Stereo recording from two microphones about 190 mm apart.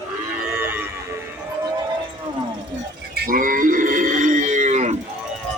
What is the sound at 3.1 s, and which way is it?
Livestock, 45° right (ahead or behind).